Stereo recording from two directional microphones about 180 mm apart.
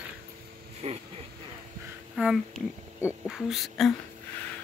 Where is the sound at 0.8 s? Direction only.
35° right (ahead or behind).